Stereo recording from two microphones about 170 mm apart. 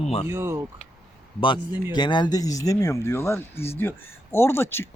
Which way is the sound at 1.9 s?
25° left (ahead or behind).